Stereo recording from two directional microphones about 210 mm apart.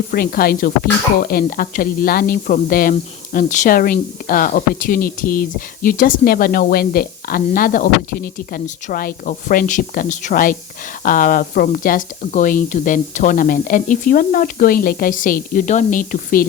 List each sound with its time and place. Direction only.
0.1 s speech: 45° left (ahead or behind)